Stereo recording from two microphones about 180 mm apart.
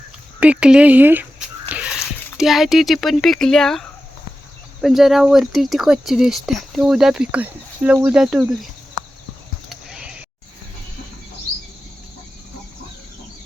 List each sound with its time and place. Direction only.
0.3 s speech: 5° right (ahead or behind)
2.4 s speech: centre (ahead or behind)
9.6 s a sound: 5° right (ahead or behind)